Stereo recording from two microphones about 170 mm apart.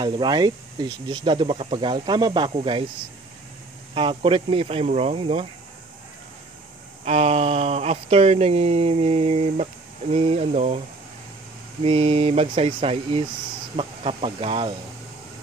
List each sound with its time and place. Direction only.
0.0 s speech: 25° right (ahead or behind)
3.9 s speech: 30° right (ahead or behind)
7.1 s speech: 35° right (ahead or behind)
11.8 s speech: 35° right (ahead or behind)